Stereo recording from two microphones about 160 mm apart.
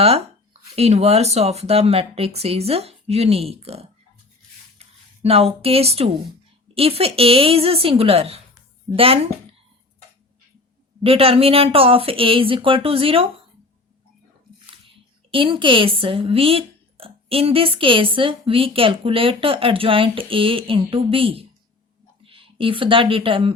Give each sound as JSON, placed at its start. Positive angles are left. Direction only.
{"t": 0.8, "sound": "speech", "side_deg": -40}
{"t": 11.0, "sound": "speech", "side_deg": -35}
{"t": 14.7, "sound": "speech", "side_deg": -35}